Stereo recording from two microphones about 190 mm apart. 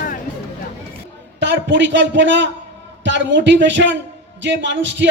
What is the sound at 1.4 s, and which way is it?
A woman's voice, 65° right (ahead or behind).